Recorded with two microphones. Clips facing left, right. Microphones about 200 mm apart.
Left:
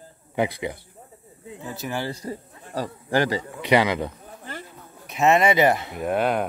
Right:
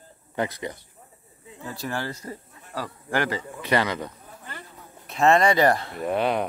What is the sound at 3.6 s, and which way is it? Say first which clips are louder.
Speech: left 4 dB; 15° left (ahead or behind).